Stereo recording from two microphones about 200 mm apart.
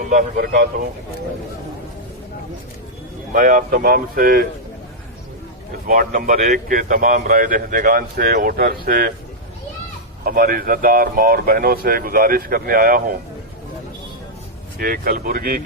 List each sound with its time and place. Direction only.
0.1 s a man's voice: 45° right (ahead or behind)
3.3 s a man's voice: 45° right (ahead or behind)
5.9 s a man's voice: 45° right (ahead or behind)
10.2 s a man's voice: 45° right (ahead or behind)
14.8 s a man's voice: 45° right (ahead or behind)